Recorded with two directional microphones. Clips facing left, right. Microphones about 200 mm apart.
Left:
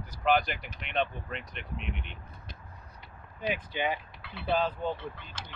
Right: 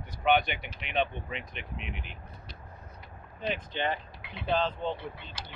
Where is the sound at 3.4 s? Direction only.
10° left (ahead or behind).